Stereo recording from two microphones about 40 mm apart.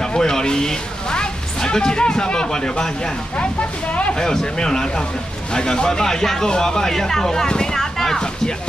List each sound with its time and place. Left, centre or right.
0.0 s speech: centre
4.1 s speech: centre